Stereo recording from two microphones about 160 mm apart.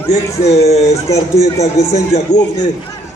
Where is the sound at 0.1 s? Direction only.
40° left (ahead or behind).